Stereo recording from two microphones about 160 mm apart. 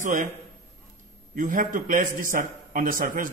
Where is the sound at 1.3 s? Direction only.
55° right (ahead or behind).